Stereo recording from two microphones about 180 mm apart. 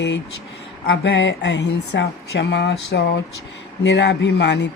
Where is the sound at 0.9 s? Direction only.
80° left.